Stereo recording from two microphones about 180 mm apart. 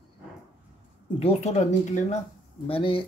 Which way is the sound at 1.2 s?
40° left (ahead or behind).